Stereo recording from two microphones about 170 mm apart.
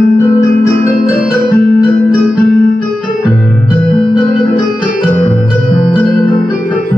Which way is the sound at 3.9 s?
25° left (ahead or behind).